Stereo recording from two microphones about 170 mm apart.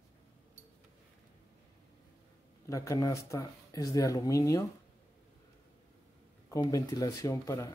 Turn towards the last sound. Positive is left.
turn(degrees=20)  # may be behind; listen again after turning